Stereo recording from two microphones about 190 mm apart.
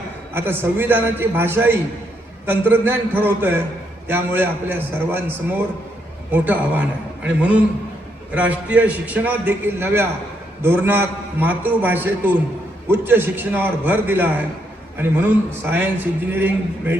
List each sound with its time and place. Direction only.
0.3 s a man's voice: 10° right (ahead or behind)
15.7 s a man's voice: 10° right (ahead or behind)